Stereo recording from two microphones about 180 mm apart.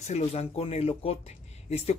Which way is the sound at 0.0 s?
40° left (ahead or behind).